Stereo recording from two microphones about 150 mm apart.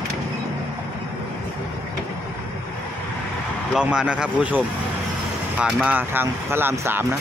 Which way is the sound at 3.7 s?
5° right (ahead or behind).